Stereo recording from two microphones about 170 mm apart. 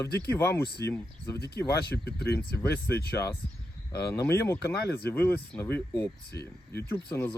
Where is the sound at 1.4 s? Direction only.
70° left (ahead or behind).